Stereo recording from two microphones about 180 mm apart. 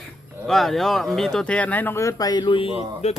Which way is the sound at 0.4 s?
Centre (ahead or behind).